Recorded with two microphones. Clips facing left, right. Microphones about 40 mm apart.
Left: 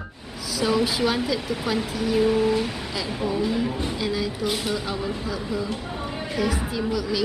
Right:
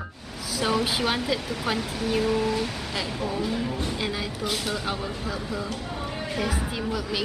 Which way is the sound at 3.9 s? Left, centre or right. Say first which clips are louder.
Left 3 dB; centre.